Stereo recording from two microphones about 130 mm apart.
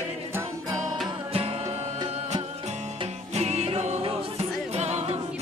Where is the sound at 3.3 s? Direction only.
55° right (ahead or behind).